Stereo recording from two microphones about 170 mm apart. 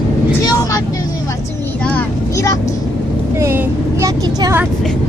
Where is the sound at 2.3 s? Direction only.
20° left (ahead or behind).